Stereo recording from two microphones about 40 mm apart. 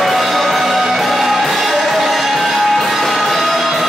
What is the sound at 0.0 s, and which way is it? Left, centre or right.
Music, centre.